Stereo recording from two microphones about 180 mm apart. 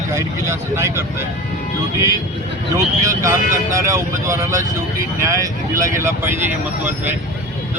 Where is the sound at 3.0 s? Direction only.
15° right (ahead or behind).